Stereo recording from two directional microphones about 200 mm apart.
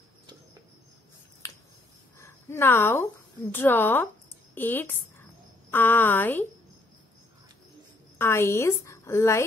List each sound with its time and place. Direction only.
1.4 s a sound: 15° left (ahead or behind)
3.5 s a woman's voice: 10° left (ahead or behind)
8.2 s a woman's voice: 10° left (ahead or behind)